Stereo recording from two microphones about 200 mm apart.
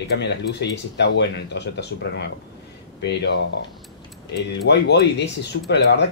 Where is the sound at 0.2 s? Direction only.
60° left (ahead or behind).